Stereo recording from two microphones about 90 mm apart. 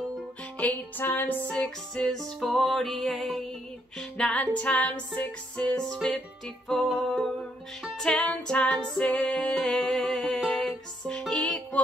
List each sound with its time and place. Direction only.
0.6 s music: 20° left (ahead or behind)
1.6 s music: 5° left (ahead or behind)
4.0 s music: 10° left (ahead or behind)
8.0 s music: 15° left (ahead or behind)